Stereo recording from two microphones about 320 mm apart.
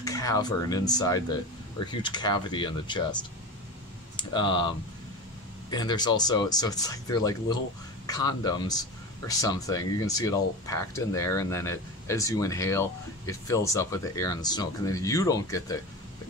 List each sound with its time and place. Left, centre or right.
0.0 s speech: centre